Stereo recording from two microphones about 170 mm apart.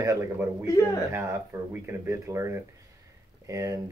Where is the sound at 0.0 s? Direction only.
15° right (ahead or behind).